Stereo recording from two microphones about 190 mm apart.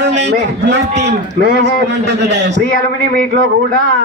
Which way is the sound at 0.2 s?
65° right (ahead or behind).